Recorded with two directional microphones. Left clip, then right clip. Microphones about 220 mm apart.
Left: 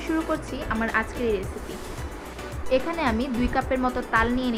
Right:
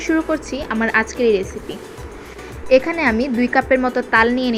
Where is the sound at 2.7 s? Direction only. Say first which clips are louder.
Right 9 dB; 25° right (ahead or behind).